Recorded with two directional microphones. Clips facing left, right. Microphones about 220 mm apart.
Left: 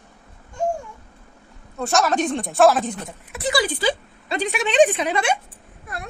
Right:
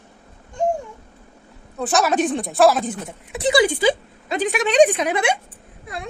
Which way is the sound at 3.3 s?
15° right (ahead or behind).